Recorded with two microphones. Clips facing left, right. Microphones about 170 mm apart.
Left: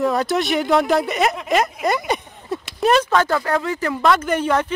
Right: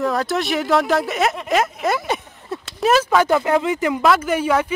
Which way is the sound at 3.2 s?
20° right (ahead or behind).